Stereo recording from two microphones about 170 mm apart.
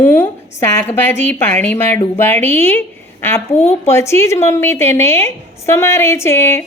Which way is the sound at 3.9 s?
15° left (ahead or behind).